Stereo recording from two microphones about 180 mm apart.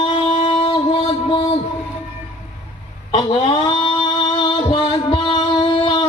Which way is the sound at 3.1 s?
25° left (ahead or behind).